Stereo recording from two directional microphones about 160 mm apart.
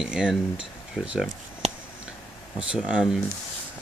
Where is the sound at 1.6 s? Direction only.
40° right (ahead or behind).